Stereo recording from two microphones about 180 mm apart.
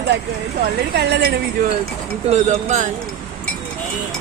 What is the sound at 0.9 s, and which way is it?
Speech, 65° right (ahead or behind).